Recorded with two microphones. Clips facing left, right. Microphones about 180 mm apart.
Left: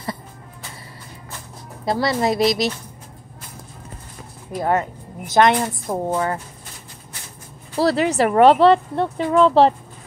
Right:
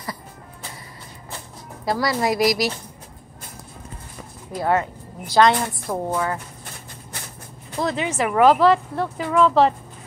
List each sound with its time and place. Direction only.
1.9 s a woman's voice: 25° left (ahead or behind)
5.2 s a woman's voice: 20° left (ahead or behind)
6.1 s a woman's voice: 30° left (ahead or behind)
7.7 s speech: 35° left (ahead or behind)